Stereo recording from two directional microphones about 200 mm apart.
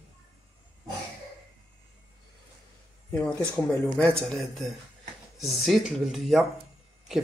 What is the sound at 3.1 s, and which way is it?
Speech, 5° left (ahead or behind).